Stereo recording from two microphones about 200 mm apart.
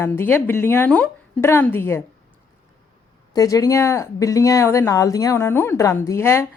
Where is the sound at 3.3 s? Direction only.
15° left (ahead or behind).